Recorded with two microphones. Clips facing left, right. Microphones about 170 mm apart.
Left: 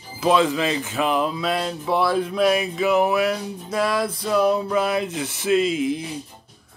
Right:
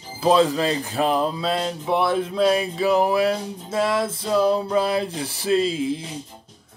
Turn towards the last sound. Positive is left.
turn(degrees=-30)  # may be behind; listen again after turning